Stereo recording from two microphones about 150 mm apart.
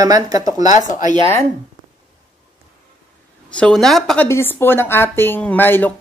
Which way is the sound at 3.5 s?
5° left (ahead or behind).